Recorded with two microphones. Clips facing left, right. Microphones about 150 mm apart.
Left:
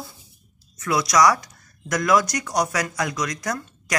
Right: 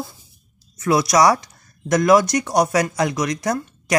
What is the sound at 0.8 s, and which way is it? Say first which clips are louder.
Speech: right 3 dB; 25° right (ahead or behind).